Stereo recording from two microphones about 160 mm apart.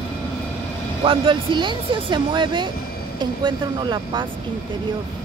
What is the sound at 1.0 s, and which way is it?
Speech, 30° right (ahead or behind).